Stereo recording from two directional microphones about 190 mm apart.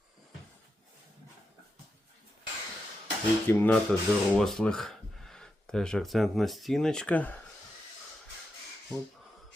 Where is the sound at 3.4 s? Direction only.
10° left (ahead or behind).